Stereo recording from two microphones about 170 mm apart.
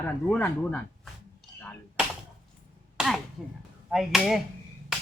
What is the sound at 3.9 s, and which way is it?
Speech, centre (ahead or behind).